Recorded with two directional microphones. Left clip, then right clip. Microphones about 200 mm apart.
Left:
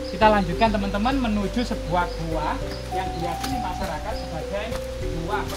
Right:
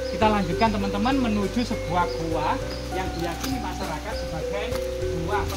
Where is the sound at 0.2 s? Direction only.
45° left (ahead or behind).